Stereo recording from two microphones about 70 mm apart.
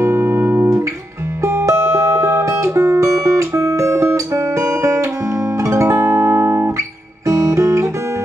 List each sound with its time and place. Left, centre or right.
0.0 s music: right
7.2 s guitar: right